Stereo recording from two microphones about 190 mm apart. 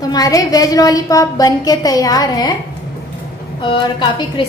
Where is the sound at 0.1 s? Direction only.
20° left (ahead or behind).